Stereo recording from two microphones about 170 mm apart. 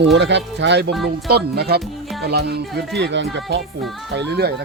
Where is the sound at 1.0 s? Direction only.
70° right (ahead or behind).